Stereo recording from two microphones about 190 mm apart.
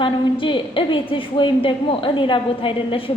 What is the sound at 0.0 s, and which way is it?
A woman's voice, 25° left (ahead or behind).